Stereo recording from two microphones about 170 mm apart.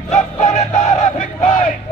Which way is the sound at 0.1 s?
45° left (ahead or behind).